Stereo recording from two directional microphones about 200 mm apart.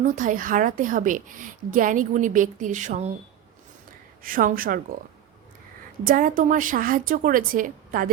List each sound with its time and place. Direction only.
0.0 s a woman's voice: 40° right (ahead or behind)
4.2 s a woman's voice: 45° right (ahead or behind)
6.1 s a woman's voice: 45° right (ahead or behind)